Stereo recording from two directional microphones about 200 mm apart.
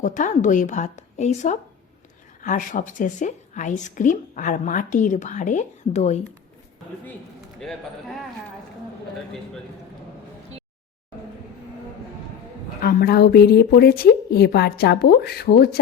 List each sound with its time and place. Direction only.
0.0 s a woman's voice: 40° left (ahead or behind)
7.6 s speech: centre (ahead or behind)
12.8 s speech: 50° left (ahead or behind)